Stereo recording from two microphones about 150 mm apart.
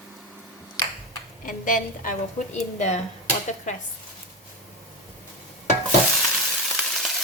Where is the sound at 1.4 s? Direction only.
65° left (ahead or behind).